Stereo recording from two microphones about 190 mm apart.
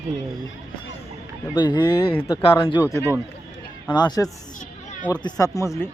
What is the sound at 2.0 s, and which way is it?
Speech, 10° left (ahead or behind).